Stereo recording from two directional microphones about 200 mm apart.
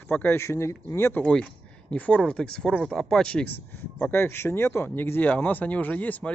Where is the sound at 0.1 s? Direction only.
10° left (ahead or behind).